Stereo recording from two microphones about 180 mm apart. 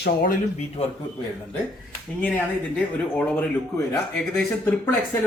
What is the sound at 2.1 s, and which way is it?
Speech, 5° left (ahead or behind).